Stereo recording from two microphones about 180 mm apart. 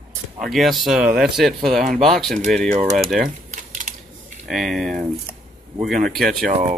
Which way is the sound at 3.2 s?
45° right (ahead or behind).